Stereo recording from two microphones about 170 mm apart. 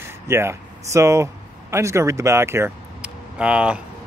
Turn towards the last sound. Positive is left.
turn(degrees=-5)  # may be behind; listen again after turning